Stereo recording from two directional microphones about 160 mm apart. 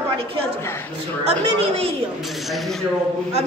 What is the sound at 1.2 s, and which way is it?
Speech, 40° right (ahead or behind).